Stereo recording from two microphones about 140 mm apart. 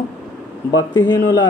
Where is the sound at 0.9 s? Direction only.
30° left (ahead or behind).